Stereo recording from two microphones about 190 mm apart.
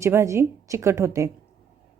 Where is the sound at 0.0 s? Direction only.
15° right (ahead or behind).